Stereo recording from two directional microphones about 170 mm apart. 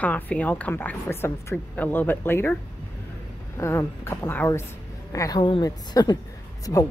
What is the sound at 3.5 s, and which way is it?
A woman's voice, 15° left (ahead or behind).